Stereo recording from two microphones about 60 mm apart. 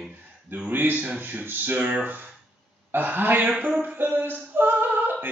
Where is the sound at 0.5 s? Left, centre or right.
Right.